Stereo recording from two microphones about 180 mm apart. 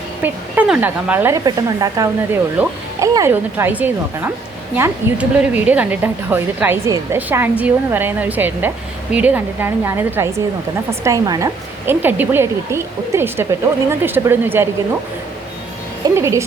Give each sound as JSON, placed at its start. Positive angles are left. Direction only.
{"t": 0.2, "sound": "a woman's voice", "side_deg": -10}
{"t": 16.0, "sound": "a woman's voice", "side_deg": -15}